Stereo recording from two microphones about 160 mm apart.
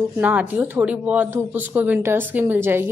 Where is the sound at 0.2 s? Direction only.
10° right (ahead or behind).